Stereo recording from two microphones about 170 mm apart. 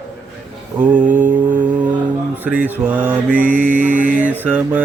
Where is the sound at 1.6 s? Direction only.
10° right (ahead or behind).